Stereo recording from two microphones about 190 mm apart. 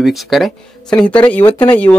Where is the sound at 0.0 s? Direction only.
Centre (ahead or behind).